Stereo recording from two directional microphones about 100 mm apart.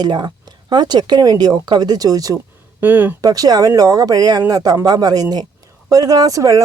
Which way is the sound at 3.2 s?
40° right (ahead or behind).